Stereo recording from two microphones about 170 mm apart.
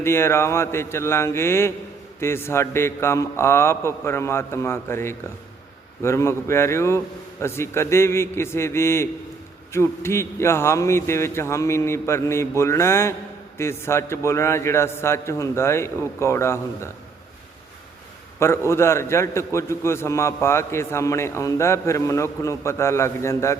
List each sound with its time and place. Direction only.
0.0 s a man's voice: 15° left (ahead or behind)
18.3 s a man's voice: 15° left (ahead or behind)